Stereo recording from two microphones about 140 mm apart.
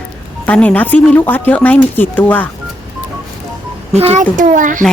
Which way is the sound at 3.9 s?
50° right (ahead or behind).